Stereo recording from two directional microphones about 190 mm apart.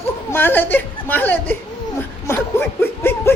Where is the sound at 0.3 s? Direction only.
10° left (ahead or behind).